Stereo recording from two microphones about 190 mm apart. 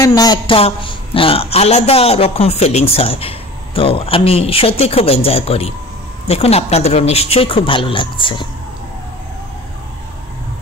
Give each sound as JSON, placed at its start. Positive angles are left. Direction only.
{"t": 0.0, "sound": "a man's voice", "side_deg": 20}